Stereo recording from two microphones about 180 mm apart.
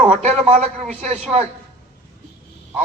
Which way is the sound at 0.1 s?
40° right (ahead or behind).